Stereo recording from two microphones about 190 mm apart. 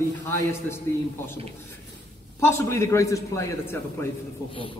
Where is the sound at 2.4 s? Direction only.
15° left (ahead or behind).